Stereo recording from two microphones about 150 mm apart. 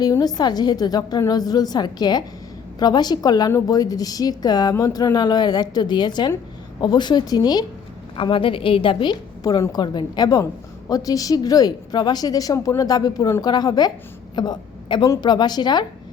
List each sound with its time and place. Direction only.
0.0 s a woman's voice: 25° left (ahead or behind)